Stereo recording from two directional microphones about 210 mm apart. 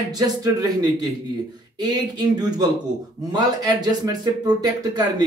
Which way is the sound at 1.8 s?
20° right (ahead or behind).